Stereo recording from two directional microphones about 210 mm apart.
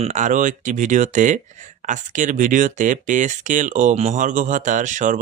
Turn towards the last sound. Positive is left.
turn(degrees=-35)  # may be behind; listen again after turning